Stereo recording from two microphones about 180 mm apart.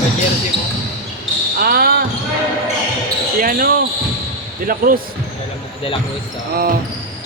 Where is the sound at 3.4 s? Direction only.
50° right (ahead or behind).